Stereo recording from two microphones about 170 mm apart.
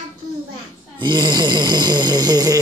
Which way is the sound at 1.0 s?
25° right (ahead or behind).